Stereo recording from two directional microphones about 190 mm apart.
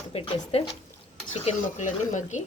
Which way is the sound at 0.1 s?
30° left (ahead or behind).